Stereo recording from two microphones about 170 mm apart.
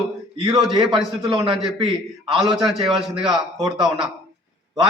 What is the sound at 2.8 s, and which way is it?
Speech, centre (ahead or behind).